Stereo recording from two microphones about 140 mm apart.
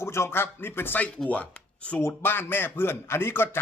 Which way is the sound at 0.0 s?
20° left (ahead or behind).